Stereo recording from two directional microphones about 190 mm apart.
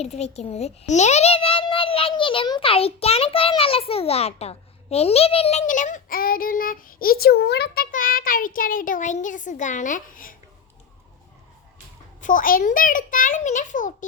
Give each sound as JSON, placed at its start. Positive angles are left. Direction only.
{"t": 0.0, "sound": "a child's voice", "side_deg": 35}
{"t": 12.2, "sound": "a child's voice", "side_deg": 45}